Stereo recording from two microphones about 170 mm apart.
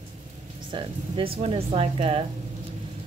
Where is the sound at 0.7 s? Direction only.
30° right (ahead or behind).